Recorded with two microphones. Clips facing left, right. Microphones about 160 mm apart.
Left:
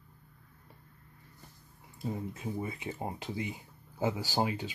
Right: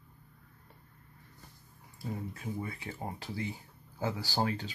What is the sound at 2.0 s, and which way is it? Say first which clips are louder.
Speech: left 3 dB; 20° left (ahead or behind).